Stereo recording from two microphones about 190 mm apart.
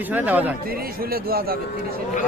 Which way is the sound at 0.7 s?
55° right (ahead or behind).